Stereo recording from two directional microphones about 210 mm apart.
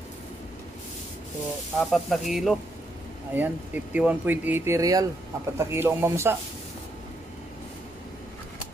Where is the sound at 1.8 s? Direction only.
Centre (ahead or behind).